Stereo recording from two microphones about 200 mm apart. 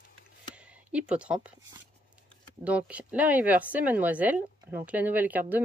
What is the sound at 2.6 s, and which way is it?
Speech, 5° right (ahead or behind).